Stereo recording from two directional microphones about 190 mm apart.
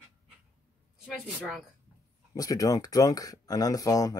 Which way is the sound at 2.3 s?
20° left (ahead or behind).